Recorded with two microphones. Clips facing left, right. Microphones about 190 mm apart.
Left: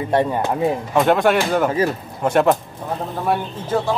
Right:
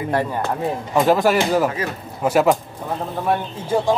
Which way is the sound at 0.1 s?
20° left (ahead or behind).